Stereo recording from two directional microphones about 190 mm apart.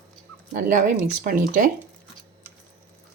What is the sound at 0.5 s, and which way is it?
Speech, 40° right (ahead or behind).